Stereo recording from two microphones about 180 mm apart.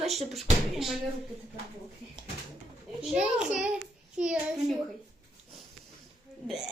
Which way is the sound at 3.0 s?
5° right (ahead or behind).